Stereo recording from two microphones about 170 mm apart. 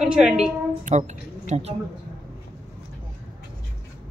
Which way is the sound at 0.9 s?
45° right (ahead or behind).